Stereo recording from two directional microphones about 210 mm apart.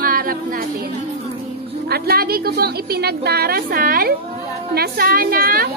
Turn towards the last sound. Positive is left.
turn(degrees=-45)  # may be behind; listen again after turning